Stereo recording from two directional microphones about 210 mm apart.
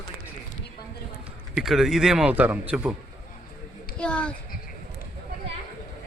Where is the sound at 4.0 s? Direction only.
5° left (ahead or behind).